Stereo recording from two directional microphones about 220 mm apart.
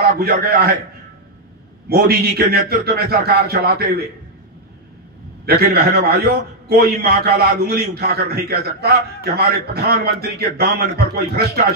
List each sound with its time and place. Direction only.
0.2 s a man's voice: 45° right (ahead or behind)
1.9 s a man's voice: 45° right (ahead or behind)
5.4 s a man's voice: 45° right (ahead or behind)